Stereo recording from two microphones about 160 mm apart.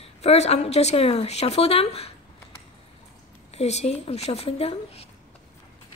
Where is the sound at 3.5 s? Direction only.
45° left (ahead or behind).